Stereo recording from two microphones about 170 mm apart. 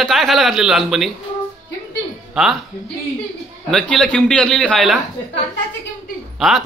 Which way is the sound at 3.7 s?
5° left (ahead or behind).